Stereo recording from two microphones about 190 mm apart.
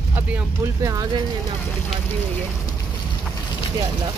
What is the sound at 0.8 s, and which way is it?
Speech, 15° right (ahead or behind).